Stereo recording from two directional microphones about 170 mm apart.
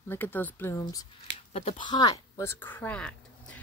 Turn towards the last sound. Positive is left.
turn(degrees=5)  # may be behind; listen again after turning